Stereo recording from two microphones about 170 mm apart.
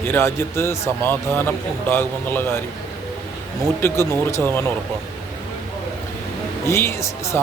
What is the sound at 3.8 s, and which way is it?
Speech, 15° left (ahead or behind).